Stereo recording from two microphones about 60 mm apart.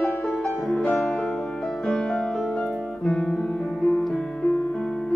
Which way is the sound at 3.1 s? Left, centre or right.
Centre.